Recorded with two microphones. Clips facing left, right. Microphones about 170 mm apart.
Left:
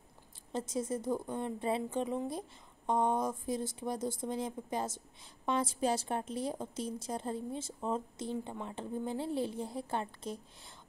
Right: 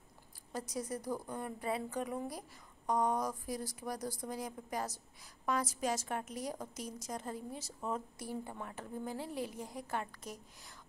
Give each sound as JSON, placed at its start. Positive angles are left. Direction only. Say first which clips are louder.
{"t": 0.5, "sound": "speech", "louder": "left 5 dB", "side_deg": 25}